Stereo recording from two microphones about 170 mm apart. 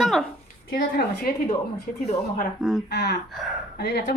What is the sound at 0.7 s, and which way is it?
Speech, 55° left (ahead or behind).